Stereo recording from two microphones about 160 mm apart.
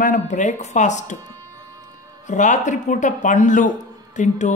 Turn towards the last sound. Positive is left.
turn(degrees=50)  # may be behind; listen again after turning